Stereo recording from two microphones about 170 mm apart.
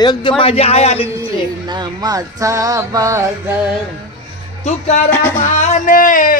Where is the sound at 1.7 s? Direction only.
25° right (ahead or behind).